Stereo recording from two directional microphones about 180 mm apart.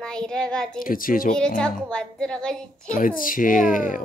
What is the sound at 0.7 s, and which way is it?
Speech, 50° left (ahead or behind).